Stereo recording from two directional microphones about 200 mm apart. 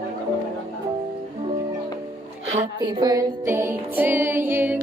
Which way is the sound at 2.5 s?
15° right (ahead or behind).